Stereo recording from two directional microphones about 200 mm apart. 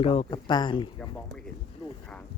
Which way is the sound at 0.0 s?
30° left (ahead or behind).